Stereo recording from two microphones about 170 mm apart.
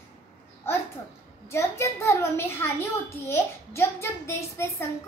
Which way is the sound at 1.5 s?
15° left (ahead or behind).